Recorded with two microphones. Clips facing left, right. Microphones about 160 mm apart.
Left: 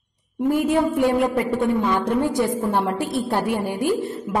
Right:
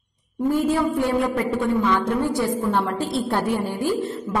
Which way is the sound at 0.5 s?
15° left (ahead or behind).